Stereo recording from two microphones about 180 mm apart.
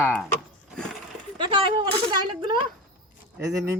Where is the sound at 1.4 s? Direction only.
25° right (ahead or behind).